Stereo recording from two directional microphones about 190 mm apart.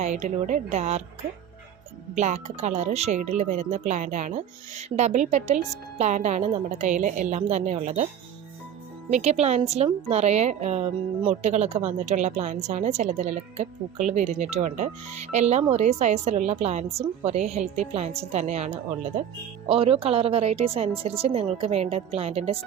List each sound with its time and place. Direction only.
0.0 s a woman's voice: 40° right (ahead or behind)
2.1 s a woman's voice: 40° right (ahead or behind)
9.0 s a woman's voice: 35° right (ahead or behind)